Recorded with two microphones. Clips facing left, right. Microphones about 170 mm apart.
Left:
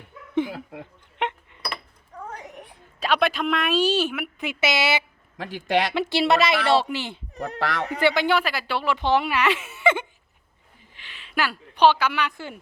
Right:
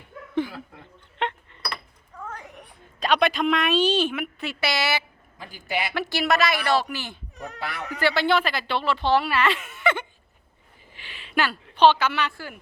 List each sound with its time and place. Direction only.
1.2 s a sound: 20° left (ahead or behind)
3.0 s a woman's voice: 5° left (ahead or behind)
4.4 s a woman's voice: 20° left (ahead or behind)
5.5 s a woman's voice: 90° left
5.9 s a woman's voice: 25° left (ahead or behind)
7.6 s a woman's voice: 90° left
7.9 s speech: 20° left (ahead or behind)
10.9 s a sound: 5° right (ahead or behind)
11.3 s speech: 10° left (ahead or behind)